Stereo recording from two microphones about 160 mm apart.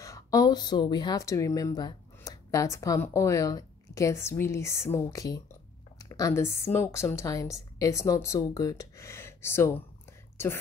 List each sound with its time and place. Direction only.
0.0 s a woman's voice: 20° left (ahead or behind)